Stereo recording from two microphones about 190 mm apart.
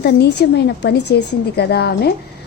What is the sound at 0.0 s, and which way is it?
A woman's voice, 60° left (ahead or behind).